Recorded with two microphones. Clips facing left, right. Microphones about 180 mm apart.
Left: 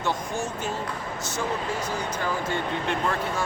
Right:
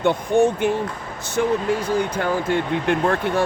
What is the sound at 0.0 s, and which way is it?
Speech, 60° right (ahead or behind).